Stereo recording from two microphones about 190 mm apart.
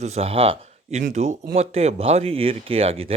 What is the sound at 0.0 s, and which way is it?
Speech, 35° right (ahead or behind).